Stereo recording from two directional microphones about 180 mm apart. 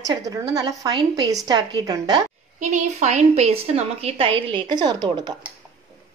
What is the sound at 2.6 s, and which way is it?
A woman's voice, 40° right (ahead or behind).